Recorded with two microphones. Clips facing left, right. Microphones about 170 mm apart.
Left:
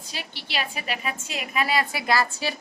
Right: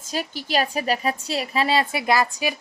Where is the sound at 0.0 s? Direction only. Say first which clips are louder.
Right 9 dB; 45° right (ahead or behind).